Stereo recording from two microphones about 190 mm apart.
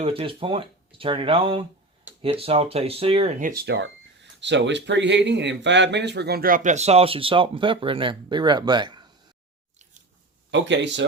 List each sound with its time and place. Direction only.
0.0 s speech: 30° right (ahead or behind)
3.7 s speech: 70° right (ahead or behind); by 9.0 s 25° right (ahead or behind)
10.5 s speech: 70° right (ahead or behind)